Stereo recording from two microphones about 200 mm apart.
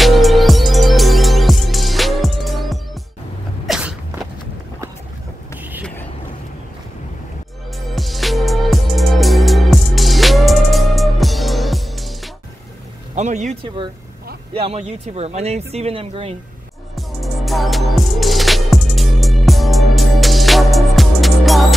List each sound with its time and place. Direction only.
0.0 s music: centre (ahead or behind)
3.6 s sneeze: centre (ahead or behind)
7.9 s music: centre (ahead or behind)
13.1 s music: 35° right (ahead or behind)
14.5 s speech: 30° right (ahead or behind)
16.9 s music: centre (ahead or behind)